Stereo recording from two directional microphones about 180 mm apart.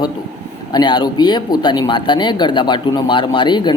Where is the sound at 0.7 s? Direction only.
25° left (ahead or behind).